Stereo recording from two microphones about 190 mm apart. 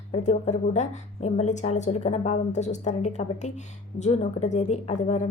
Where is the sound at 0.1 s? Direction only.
40° left (ahead or behind).